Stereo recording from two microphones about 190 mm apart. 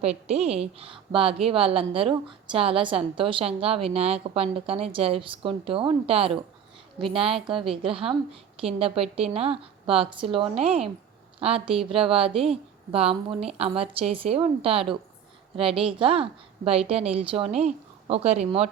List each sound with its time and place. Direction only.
0.0 s a woman's voice: 35° right (ahead or behind)